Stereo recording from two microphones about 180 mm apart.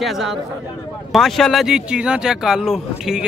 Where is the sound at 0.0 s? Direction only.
Centre (ahead or behind).